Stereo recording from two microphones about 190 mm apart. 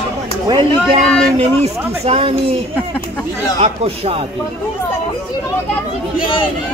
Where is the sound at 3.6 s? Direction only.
35° right (ahead or behind).